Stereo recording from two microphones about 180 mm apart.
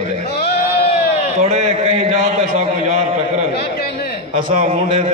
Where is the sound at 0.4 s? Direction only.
65° left (ahead or behind).